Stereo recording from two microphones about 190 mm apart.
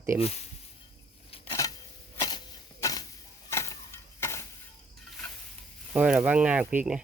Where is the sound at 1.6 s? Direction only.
20° left (ahead or behind).